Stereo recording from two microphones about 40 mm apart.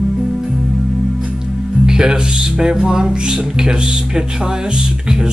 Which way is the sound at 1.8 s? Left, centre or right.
Centre.